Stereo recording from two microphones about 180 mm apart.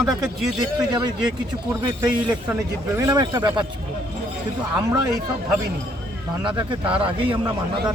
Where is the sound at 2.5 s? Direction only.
20° right (ahead or behind).